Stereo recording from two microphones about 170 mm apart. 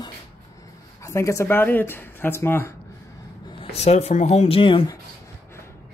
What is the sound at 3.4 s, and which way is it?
Speech, 35° left (ahead or behind).